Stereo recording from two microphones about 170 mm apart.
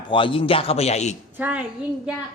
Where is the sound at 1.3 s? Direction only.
10° right (ahead or behind).